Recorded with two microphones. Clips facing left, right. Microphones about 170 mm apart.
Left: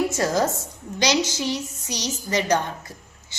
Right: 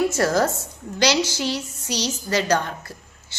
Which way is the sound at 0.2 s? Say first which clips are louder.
Right 2 dB; 15° left (ahead or behind).